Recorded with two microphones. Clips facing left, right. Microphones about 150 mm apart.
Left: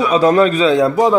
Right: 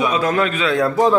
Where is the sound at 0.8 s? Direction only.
20° left (ahead or behind).